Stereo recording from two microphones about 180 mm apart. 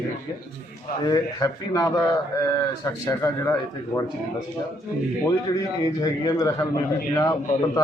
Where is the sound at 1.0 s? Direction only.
20° left (ahead or behind).